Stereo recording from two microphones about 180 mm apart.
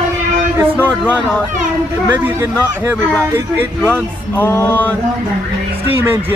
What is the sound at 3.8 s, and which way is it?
Speech, 10° left (ahead or behind).